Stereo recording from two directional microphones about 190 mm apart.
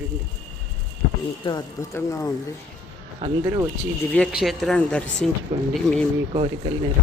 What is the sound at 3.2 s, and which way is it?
Speech, 30° right (ahead or behind).